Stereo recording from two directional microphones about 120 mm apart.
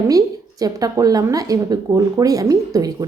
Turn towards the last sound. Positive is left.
turn(degrees=-30)  # may be behind; listen again after turning